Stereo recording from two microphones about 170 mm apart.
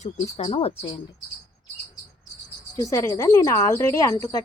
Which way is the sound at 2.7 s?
20° left (ahead or behind).